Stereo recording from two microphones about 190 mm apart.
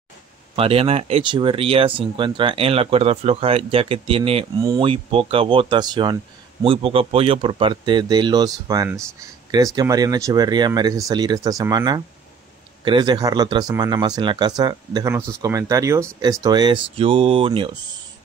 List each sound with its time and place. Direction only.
0.6 s speech: 30° right (ahead or behind)